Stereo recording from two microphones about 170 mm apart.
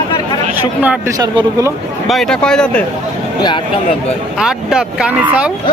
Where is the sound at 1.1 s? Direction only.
20° right (ahead or behind).